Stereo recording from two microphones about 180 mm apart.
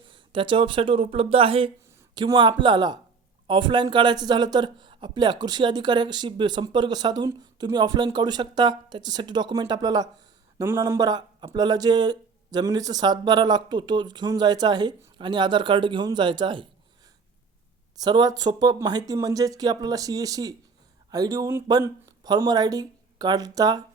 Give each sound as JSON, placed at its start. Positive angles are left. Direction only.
{"t": 0.1, "sound": "speech", "side_deg": -25}
{"t": 18.0, "sound": "speech", "side_deg": -20}